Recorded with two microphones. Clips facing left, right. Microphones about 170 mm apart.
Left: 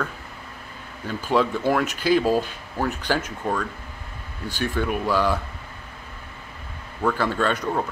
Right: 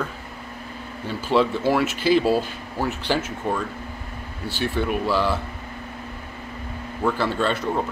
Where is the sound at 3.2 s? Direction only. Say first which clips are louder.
Right 1 dB; 5° right (ahead or behind).